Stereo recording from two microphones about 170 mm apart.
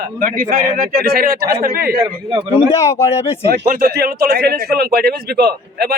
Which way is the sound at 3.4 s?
65° right (ahead or behind).